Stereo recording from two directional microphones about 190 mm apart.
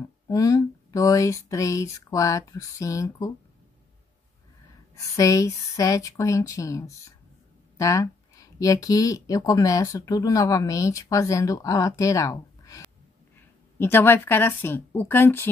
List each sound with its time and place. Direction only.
0.3 s speech: 20° left (ahead or behind)
4.9 s speech: 15° left (ahead or behind)